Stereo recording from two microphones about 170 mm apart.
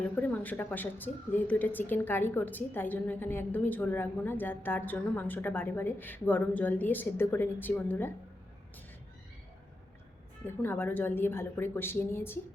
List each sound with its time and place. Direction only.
0.2 s a woman's voice: 10° left (ahead or behind)
10.4 s a woman's voice: 10° left (ahead or behind)